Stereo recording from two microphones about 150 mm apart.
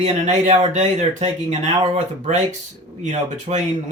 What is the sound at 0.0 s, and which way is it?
Speech, 50° right (ahead or behind).